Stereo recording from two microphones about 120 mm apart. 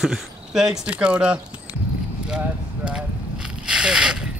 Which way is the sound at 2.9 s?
5° right (ahead or behind).